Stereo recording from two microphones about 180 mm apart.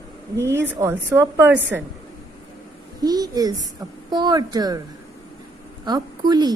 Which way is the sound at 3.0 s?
20° right (ahead or behind).